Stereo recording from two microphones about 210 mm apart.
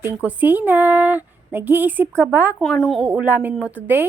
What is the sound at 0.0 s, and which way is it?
A woman's voice, 10° right (ahead or behind).